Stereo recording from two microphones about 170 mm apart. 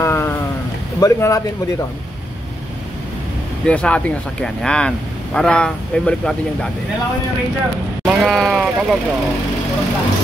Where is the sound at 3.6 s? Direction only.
5° left (ahead or behind).